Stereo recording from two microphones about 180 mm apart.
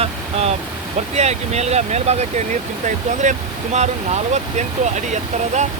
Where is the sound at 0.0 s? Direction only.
35° right (ahead or behind).